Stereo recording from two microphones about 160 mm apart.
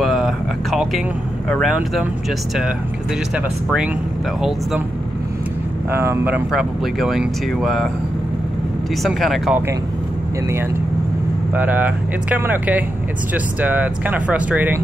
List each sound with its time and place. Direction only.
0.0 s a sound: centre (ahead or behind)
1.5 s speech: centre (ahead or behind)
4.4 s speech: 5° right (ahead or behind)
5.9 s speech: 15° right (ahead or behind)
9.0 s speech: centre (ahead or behind)
11.5 s speech: 10° right (ahead or behind)